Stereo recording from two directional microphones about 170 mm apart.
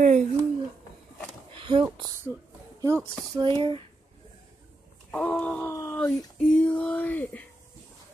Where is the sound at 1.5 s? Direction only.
30° right (ahead or behind).